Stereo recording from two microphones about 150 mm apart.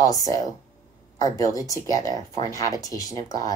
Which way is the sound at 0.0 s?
25° left (ahead or behind).